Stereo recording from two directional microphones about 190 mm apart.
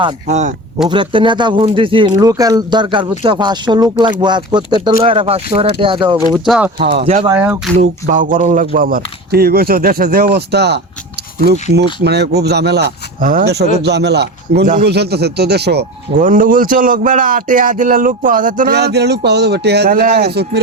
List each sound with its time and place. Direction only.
0.3 s speech: 35° right (ahead or behind)
0.9 s speech: 25° right (ahead or behind)
6.3 s speech: 5° right (ahead or behind)
6.9 s speech: 35° right (ahead or behind)
7.3 s speech: 10° right (ahead or behind)
7.8 s a man's voice: 45° right (ahead or behind); by 10.8 s 60° right (ahead or behind)
12.0 s speech: 60° right (ahead or behind)
16.1 s a man's voice: 45° right (ahead or behind); by 20.6 s 60° right (ahead or behind)